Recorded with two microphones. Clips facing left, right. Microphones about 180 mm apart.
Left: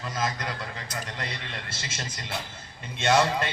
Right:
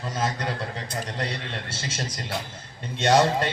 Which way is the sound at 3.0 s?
35° right (ahead or behind).